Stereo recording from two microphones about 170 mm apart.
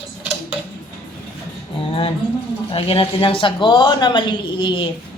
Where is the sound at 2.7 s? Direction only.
30° left (ahead or behind).